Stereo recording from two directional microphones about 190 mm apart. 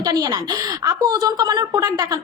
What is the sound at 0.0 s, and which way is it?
A woman's voice, 20° right (ahead or behind).